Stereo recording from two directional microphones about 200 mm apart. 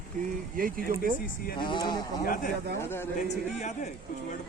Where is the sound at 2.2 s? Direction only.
40° left (ahead or behind).